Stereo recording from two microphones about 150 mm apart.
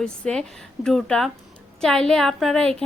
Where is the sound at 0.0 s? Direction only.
5° left (ahead or behind).